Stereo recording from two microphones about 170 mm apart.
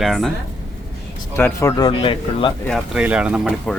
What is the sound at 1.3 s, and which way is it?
Speech, 15° left (ahead or behind).